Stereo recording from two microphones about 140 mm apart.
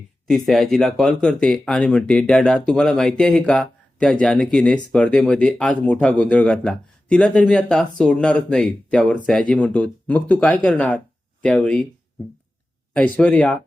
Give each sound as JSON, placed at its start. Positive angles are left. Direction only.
{"t": 0.3, "sound": "speech", "side_deg": 0}
{"t": 12.9, "sound": "speech", "side_deg": 10}